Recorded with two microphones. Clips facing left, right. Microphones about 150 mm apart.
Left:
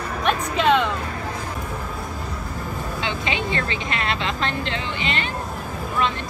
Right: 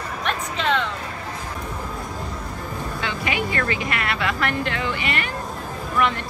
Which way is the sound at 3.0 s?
20° left (ahead or behind).